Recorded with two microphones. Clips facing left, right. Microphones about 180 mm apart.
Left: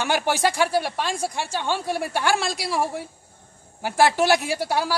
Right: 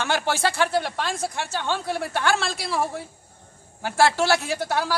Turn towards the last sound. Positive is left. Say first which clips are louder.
# left 1 dB
turn(degrees=10)  # may be behind; listen again after turning